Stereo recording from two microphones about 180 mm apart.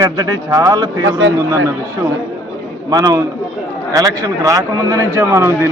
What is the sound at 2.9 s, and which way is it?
A man's voice, 20° right (ahead or behind).